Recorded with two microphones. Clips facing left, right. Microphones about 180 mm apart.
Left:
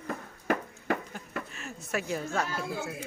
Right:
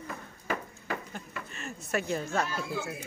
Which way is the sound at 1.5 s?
5° left (ahead or behind).